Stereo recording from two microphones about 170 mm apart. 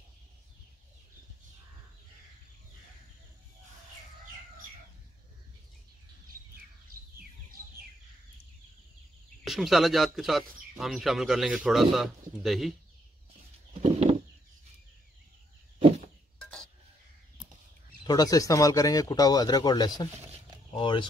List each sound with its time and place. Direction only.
6.5 s bird: 65° right (ahead or behind)
9.4 s speech: centre (ahead or behind)
13.8 s a sound: 40° right (ahead or behind)
18.0 s speech: 20° left (ahead or behind)